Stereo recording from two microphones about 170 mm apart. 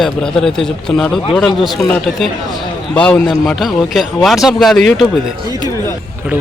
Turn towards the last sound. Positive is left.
turn(degrees=0)  # may be behind; listen again after turning